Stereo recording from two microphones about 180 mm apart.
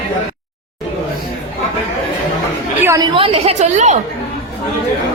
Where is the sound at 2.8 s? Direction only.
15° right (ahead or behind).